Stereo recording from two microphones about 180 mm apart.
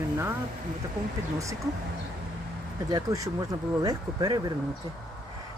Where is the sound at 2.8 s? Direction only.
20° right (ahead or behind).